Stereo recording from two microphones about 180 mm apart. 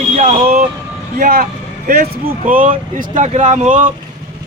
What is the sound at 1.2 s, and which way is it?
Speech, 55° right (ahead or behind).